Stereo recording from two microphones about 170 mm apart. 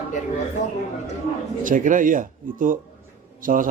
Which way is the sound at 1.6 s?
50° right (ahead or behind).